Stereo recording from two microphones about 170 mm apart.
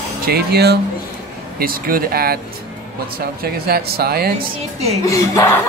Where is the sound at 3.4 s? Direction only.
65° right (ahead or behind).